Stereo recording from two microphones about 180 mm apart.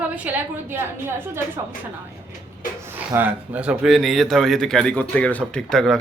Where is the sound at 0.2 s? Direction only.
10° right (ahead or behind).